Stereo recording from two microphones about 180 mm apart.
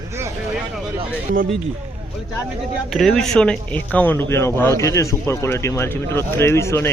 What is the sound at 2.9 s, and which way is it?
Speech, centre (ahead or behind).